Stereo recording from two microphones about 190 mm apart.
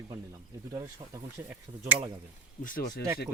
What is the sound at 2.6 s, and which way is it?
Speech, 50° left (ahead or behind).